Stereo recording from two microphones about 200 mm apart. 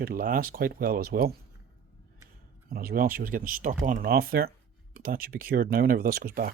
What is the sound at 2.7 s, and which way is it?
Speech, 50° right (ahead or behind).